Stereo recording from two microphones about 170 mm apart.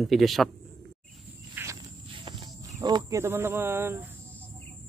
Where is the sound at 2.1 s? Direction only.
30° right (ahead or behind).